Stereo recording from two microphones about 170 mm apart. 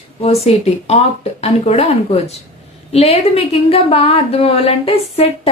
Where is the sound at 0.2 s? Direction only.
35° left (ahead or behind).